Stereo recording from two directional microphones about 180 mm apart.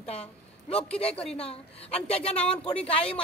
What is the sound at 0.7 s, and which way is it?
Speech, 35° left (ahead or behind).